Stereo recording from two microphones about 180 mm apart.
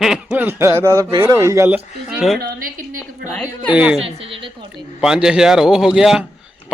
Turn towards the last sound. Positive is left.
turn(degrees=-5)  # may be behind; listen again after turning